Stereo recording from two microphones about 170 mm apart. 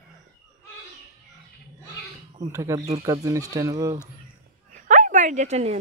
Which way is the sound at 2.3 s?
20° right (ahead or behind).